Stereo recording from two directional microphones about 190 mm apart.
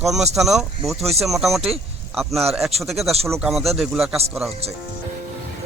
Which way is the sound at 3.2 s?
15° right (ahead or behind).